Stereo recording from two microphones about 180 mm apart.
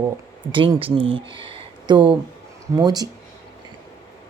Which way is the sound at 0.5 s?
25° right (ahead or behind).